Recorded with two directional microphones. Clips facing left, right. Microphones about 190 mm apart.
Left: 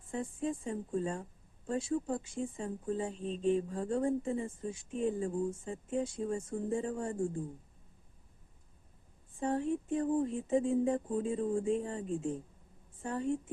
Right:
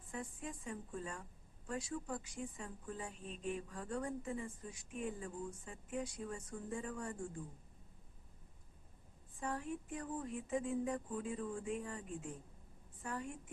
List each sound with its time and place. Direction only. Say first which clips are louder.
0.1 s a woman's voice: left 10 dB; 25° left (ahead or behind)
9.3 s a woman's voice: left 10 dB; 25° left (ahead or behind)